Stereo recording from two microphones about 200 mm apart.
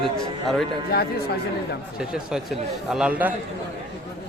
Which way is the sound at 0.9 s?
50° left (ahead or behind).